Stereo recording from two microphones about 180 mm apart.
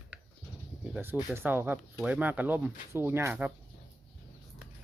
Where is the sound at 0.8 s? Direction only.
10° right (ahead or behind).